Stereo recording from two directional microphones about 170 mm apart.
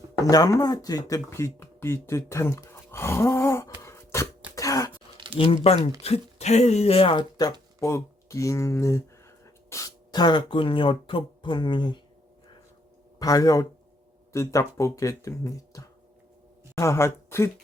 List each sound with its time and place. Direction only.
0.3 s speech: 20° left (ahead or behind)
3.8 s cough: 15° left (ahead or behind)
5.1 s a sound: 30° left (ahead or behind)
5.7 s speech: 35° left (ahead or behind)
13.1 s speech: 20° left (ahead or behind)